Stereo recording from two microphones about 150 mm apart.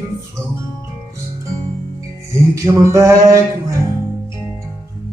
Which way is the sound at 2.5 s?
20° right (ahead or behind).